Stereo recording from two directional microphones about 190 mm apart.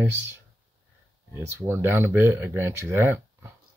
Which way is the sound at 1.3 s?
15° right (ahead or behind).